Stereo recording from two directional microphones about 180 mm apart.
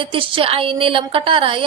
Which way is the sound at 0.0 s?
30° right (ahead or behind).